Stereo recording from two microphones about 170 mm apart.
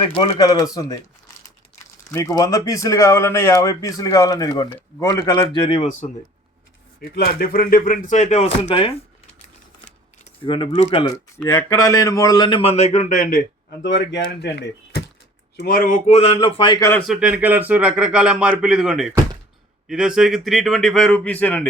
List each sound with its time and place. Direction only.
0.0 s speech: 30° left (ahead or behind)
2.0 s speech: 20° left (ahead or behind)
5.5 s speech: 35° left (ahead or behind)
7.0 s speech: 65° left (ahead or behind); by 9.0 s 35° left (ahead or behind)
10.4 s speech: 30° left (ahead or behind); by 13.4 s 50° left (ahead or behind)
13.8 s speech: 90° left
15.5 s speech: 60° left (ahead or behind)
16.0 s speech: 35° left (ahead or behind)
17.0 s a man's voice: 5° right (ahead or behind)